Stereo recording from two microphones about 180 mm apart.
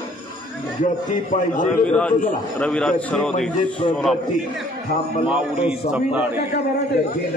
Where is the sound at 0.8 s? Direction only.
45° left (ahead or behind).